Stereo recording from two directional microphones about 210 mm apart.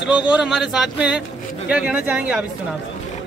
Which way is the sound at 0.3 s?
5° right (ahead or behind).